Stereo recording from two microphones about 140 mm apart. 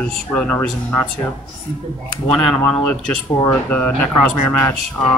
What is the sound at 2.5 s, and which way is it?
Speech, 10° left (ahead or behind).